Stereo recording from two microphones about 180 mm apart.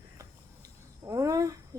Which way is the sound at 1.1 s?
20° right (ahead or behind).